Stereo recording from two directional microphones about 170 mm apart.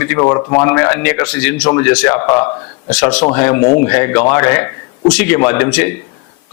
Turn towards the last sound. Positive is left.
turn(degrees=10)  # may be behind; listen again after turning